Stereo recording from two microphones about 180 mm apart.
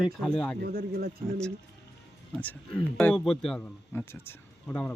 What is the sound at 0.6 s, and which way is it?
Speech, 60° right (ahead or behind).